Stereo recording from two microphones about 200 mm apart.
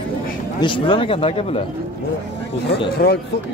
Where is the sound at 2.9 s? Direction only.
50° left (ahead or behind).